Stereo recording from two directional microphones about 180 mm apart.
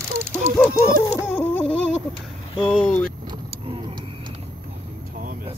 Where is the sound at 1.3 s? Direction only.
10° left (ahead or behind).